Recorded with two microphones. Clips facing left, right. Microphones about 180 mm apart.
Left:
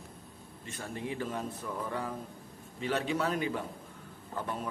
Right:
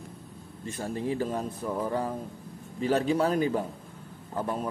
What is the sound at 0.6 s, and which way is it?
A man's voice, 35° right (ahead or behind).